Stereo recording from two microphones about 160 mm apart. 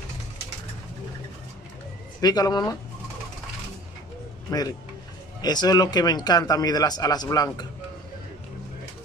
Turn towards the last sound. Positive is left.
turn(degrees=20)  # may be behind; listen again after turning